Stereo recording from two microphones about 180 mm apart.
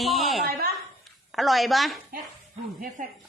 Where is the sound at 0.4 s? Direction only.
60° right (ahead or behind).